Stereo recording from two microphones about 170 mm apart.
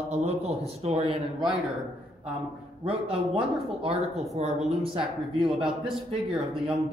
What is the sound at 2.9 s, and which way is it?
A man's voice, 30° right (ahead or behind).